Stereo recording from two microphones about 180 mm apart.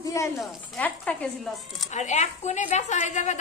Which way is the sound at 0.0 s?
15° left (ahead or behind).